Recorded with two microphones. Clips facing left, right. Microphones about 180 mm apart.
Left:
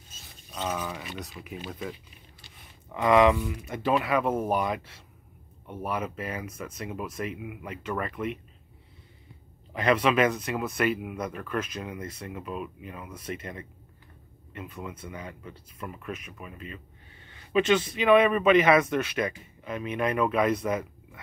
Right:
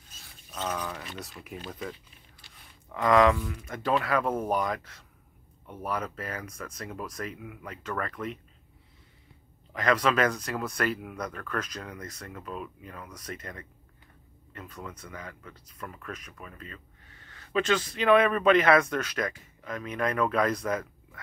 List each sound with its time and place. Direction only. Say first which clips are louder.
0.5 s speech: left 1 dB; 10° left (ahead or behind)
9.7 s speech: left 2 dB; 25° left (ahead or behind)
10.0 s speech: left 2 dB; 5° left (ahead or behind)
12.0 s speech: left 4 dB; 25° left (ahead or behind)
12.4 s speech: left 2 dB; 10° left (ahead or behind)
13.1 s speech: left 5 dB; 25° left (ahead or behind)
17.1 s a sound: even; 25° left (ahead or behind)
17.5 s speech: left 4 dB; 10° left (ahead or behind)